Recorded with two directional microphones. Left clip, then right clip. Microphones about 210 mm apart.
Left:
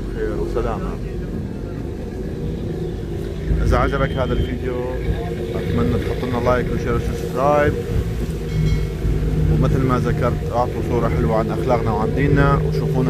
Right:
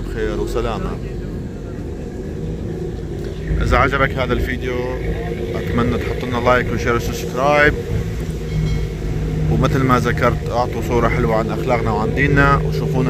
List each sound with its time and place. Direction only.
0.2 s speech: 10° right (ahead or behind)
3.7 s speech: centre (ahead or behind)
5.8 s speech: centre (ahead or behind)
9.6 s speech: 5° right (ahead or behind)